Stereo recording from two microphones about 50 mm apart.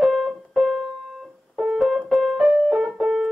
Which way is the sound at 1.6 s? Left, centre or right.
Centre.